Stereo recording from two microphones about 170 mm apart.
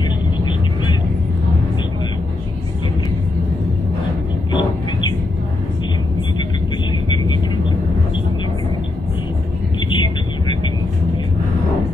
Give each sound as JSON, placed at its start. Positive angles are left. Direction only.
{"t": 4.5, "sound": "bird", "side_deg": 25}
{"t": 9.8, "sound": "vehicle", "side_deg": 25}